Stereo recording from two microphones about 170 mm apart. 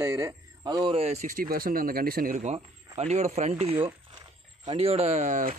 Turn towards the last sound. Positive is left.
turn(degrees=-50)  # may be behind; listen again after turning